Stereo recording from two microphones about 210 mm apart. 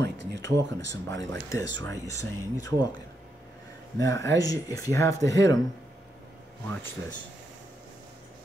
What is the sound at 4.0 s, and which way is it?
Speech, 15° left (ahead or behind).